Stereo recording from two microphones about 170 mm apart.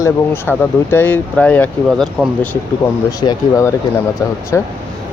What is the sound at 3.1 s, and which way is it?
Speech, 20° left (ahead or behind).